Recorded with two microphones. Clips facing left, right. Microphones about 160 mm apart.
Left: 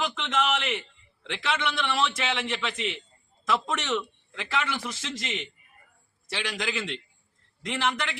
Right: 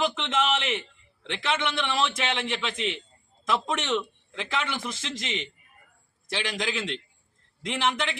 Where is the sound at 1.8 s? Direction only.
20° right (ahead or behind).